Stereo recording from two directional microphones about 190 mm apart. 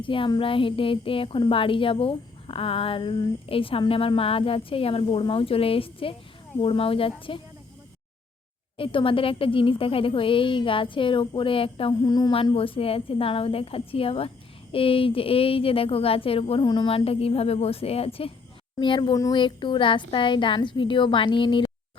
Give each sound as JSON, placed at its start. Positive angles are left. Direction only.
{"t": 0.0, "sound": "a woman's voice", "side_deg": 25}
{"t": 8.8, "sound": "a woman's voice", "side_deg": 25}